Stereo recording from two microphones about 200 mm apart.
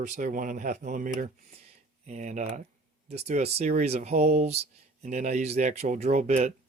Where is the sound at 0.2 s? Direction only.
40° right (ahead or behind).